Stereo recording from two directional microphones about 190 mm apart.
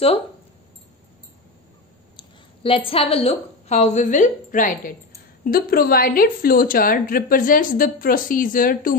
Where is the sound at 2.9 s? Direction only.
30° left (ahead or behind).